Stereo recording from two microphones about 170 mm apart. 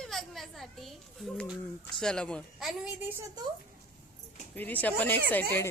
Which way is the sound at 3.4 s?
25° right (ahead or behind).